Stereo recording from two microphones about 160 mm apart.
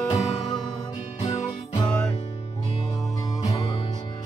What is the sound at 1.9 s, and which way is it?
Music, 5° left (ahead or behind).